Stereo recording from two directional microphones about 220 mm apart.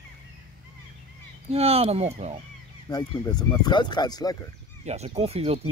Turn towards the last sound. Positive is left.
turn(degrees=-25)  # may be behind; listen again after turning